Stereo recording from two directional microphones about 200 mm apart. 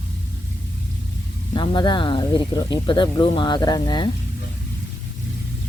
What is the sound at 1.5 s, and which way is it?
Speech, 25° left (ahead or behind).